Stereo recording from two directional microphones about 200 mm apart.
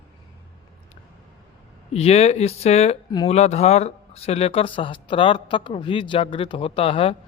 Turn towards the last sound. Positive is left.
turn(degrees=30)  # may be behind; listen again after turning